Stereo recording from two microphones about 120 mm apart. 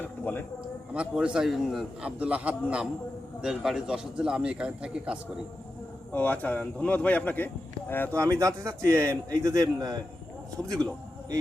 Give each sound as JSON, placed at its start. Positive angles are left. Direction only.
{"t": 0.0, "sound": "a sound", "side_deg": 15}
{"t": 0.9, "sound": "a man's voice", "side_deg": -10}
{"t": 6.1, "sound": "speech", "side_deg": 10}
{"t": 8.1, "sound": "a man's voice", "side_deg": -25}